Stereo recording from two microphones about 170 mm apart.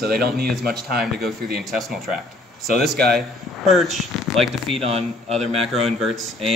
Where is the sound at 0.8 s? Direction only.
65° right (ahead or behind).